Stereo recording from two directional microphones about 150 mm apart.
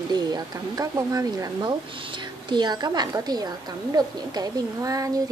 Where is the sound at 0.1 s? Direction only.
25° right (ahead or behind).